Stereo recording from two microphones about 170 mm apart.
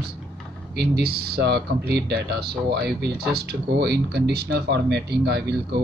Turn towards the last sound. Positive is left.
turn(degrees=-75)  # may be behind; listen again after turning